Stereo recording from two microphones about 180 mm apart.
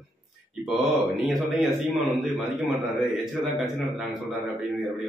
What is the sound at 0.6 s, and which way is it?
A man's voice, centre (ahead or behind).